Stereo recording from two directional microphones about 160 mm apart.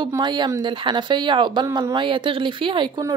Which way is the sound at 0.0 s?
25° right (ahead or behind).